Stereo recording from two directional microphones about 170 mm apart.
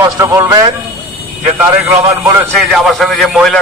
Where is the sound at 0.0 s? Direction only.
20° right (ahead or behind).